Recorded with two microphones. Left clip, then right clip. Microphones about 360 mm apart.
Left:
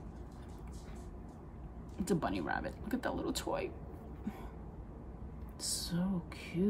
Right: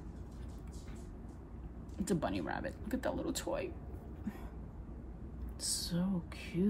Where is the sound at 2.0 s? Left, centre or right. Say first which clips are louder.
Left 1 dB; centre.